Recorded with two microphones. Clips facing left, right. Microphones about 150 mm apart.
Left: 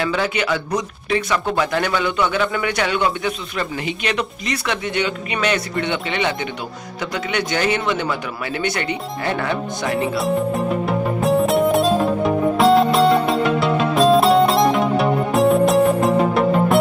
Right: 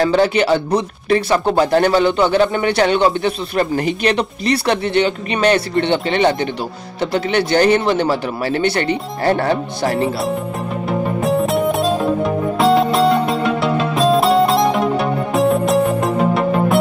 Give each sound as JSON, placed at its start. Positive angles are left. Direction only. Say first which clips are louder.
{"t": 0.0, "sound": "speech", "louder": "right 7 dB", "side_deg": -35}
{"t": 3.5, "sound": "speech", "louder": "right 7 dB", "side_deg": -45}
{"t": 10.9, "sound": "music", "louder": "right 3 dB", "side_deg": 0}